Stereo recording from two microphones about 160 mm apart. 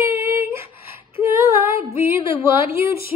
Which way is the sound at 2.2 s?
35° left (ahead or behind).